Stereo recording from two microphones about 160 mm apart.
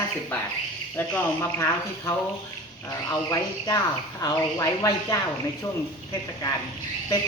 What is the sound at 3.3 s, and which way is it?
Speech, 20° left (ahead or behind).